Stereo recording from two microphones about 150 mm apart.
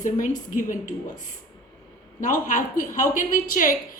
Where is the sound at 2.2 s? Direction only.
60° left (ahead or behind).